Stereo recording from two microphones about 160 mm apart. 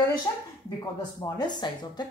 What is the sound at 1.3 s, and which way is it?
Speech, 25° left (ahead or behind).